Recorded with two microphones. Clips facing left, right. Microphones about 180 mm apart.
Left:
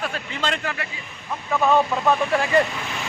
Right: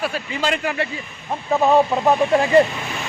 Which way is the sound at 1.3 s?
30° right (ahead or behind).